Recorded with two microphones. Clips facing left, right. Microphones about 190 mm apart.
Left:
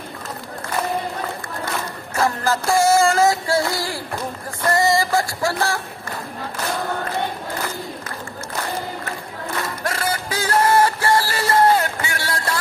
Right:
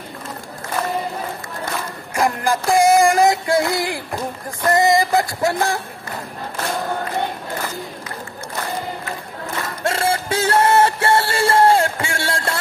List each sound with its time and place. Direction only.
2.1 s music: 15° right (ahead or behind)
4.6 s a sound: 20° right (ahead or behind)
9.8 s music: 25° right (ahead or behind)